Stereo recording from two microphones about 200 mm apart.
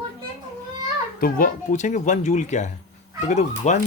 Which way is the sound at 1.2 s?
45° left (ahead or behind).